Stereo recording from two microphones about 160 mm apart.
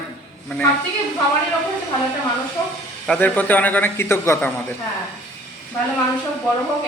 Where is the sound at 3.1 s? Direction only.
10° left (ahead or behind).